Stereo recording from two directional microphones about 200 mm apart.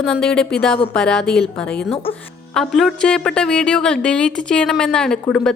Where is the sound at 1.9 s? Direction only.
25° left (ahead or behind).